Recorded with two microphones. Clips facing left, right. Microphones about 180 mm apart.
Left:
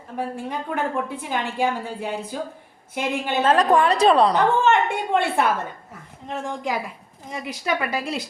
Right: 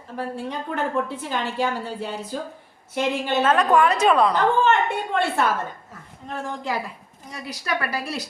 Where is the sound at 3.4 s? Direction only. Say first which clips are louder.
Left 1 dB; 35° left (ahead or behind).